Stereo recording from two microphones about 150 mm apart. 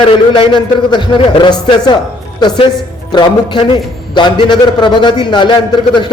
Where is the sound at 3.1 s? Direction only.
30° left (ahead or behind).